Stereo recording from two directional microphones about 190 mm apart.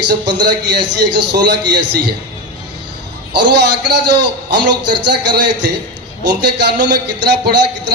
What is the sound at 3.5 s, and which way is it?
A man's voice, 60° right (ahead or behind).